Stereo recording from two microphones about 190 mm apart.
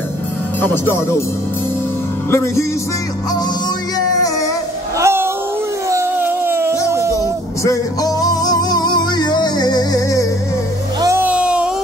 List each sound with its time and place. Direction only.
0.6 s speech: 10° left (ahead or behind)
2.3 s speech: 15° left (ahead or behind)
4.9 s a sound: 15° right (ahead or behind)
5.9 s dog: 10° right (ahead or behind)
6.9 s a sound: 15° right (ahead or behind)
7.2 s music: 15° left (ahead or behind)
11.0 s music: 15° right (ahead or behind)